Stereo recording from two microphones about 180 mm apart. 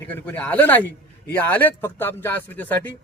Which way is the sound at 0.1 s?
10° left (ahead or behind).